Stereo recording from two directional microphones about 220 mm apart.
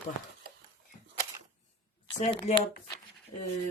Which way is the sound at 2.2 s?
25° left (ahead or behind).